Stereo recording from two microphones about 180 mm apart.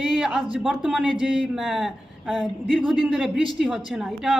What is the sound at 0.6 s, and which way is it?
A man's voice, centre (ahead or behind).